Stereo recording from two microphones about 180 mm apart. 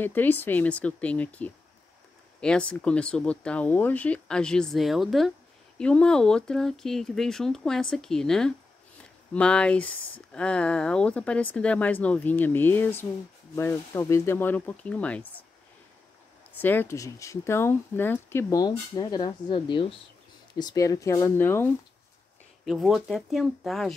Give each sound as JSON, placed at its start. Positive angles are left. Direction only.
{"t": 0.0, "sound": "speech", "side_deg": 10}
{"t": 16.5, "sound": "speech", "side_deg": 10}
{"t": 22.7, "sound": "speech", "side_deg": 0}